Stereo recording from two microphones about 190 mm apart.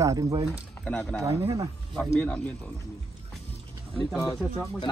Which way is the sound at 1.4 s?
15° right (ahead or behind).